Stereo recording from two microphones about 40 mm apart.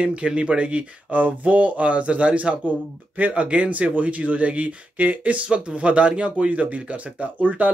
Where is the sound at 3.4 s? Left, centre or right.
Right.